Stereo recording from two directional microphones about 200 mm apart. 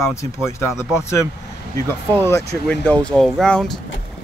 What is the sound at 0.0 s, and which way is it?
Speech, 15° left (ahead or behind).